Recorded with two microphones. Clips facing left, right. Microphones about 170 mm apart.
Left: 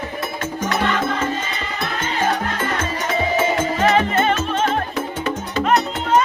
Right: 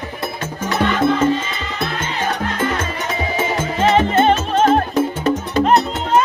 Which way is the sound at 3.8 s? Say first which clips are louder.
Right 5 dB; 25° right (ahead or behind).